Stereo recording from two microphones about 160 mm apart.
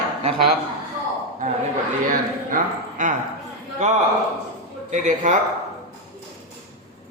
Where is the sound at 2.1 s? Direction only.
55° right (ahead or behind).